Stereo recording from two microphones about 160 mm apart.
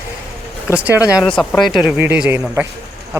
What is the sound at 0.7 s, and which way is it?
Speech, 10° right (ahead or behind).